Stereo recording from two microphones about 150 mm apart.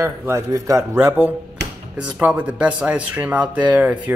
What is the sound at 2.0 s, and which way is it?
Speech, 10° right (ahead or behind).